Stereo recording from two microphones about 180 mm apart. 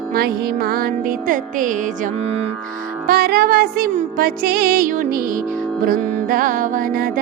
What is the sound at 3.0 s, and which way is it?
Music, 55° right (ahead or behind).